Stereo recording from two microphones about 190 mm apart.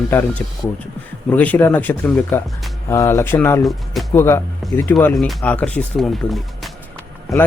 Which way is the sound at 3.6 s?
Centre (ahead or behind).